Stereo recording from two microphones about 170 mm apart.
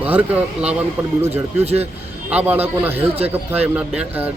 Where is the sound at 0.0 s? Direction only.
10° right (ahead or behind).